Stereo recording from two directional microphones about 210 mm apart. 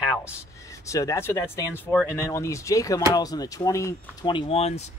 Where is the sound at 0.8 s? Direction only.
15° left (ahead or behind).